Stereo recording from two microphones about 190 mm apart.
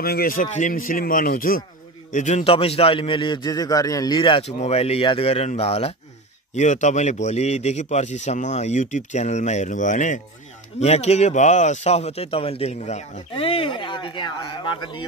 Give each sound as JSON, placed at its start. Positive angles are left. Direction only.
{"t": 0.0, "sound": "a man's voice", "side_deg": 50}
{"t": 2.1, "sound": "speech", "side_deg": 35}